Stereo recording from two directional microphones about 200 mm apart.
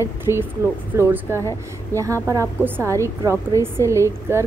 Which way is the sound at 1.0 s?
15° right (ahead or behind).